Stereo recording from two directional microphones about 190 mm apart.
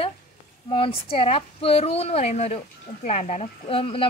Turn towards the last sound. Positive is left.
turn(degrees=30)  # may be behind; listen again after turning